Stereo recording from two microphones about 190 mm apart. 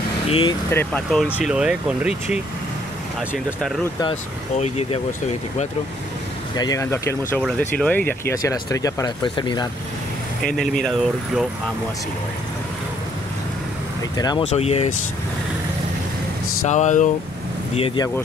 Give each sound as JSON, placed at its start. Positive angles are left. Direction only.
{"t": 0.3, "sound": "speech", "side_deg": 25}
{"t": 0.7, "sound": "speech", "side_deg": 10}
{"t": 1.1, "sound": "speech", "side_deg": 0}
{"t": 3.2, "sound": "speech", "side_deg": 0}
{"t": 4.1, "sound": "speech", "side_deg": 35}
{"t": 6.5, "sound": "speech", "side_deg": 20}
{"t": 10.4, "sound": "speech", "side_deg": 0}
{"t": 14.1, "sound": "speech", "side_deg": 20}
{"t": 14.4, "sound": "speech", "side_deg": 35}
{"t": 16.6, "sound": "speech", "side_deg": 40}
{"t": 17.7, "sound": "speech", "side_deg": 30}